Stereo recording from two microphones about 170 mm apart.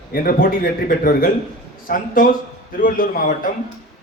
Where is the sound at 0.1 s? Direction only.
60° left (ahead or behind).